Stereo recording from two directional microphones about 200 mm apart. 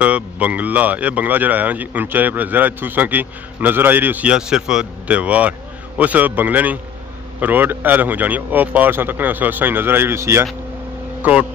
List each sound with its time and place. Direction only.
0.0 s speech: 5° right (ahead or behind)